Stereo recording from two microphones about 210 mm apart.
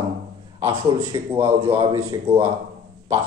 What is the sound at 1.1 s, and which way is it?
A man's voice, 20° right (ahead or behind).